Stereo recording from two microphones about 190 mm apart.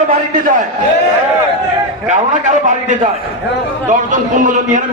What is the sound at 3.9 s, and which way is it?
Speech, 40° right (ahead or behind).